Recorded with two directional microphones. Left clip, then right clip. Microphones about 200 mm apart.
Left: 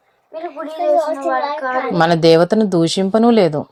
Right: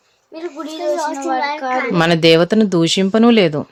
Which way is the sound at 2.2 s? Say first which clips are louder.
Even; 5° right (ahead or behind).